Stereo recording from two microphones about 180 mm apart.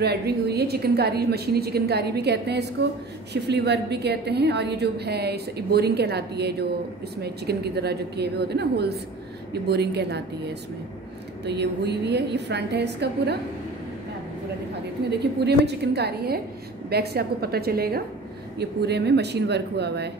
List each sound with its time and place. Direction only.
0.0 s a woman's voice: 65° right (ahead or behind)
15.0 s a woman's voice: 65° right (ahead or behind)